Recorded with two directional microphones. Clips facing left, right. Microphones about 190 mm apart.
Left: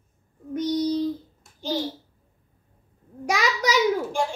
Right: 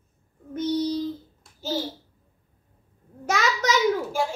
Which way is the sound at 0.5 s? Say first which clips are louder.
Left 1 dB; 15° left (ahead or behind).